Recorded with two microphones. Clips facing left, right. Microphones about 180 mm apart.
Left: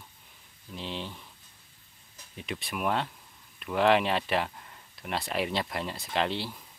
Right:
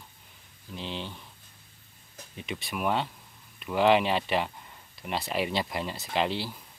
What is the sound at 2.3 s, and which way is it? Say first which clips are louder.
Speech: right 1 dB; centre (ahead or behind).